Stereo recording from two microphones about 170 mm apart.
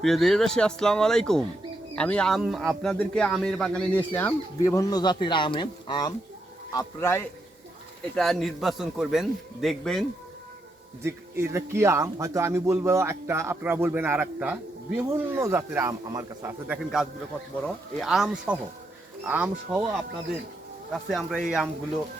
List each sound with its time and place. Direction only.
0.0 s a man's voice: centre (ahead or behind)
8.1 s a man's voice: centre (ahead or behind)
11.0 s speech: 15° right (ahead or behind)
16.8 s a man's voice: centre (ahead or behind)